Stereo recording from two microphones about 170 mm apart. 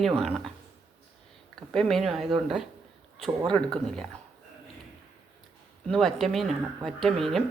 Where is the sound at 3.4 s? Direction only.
25° right (ahead or behind).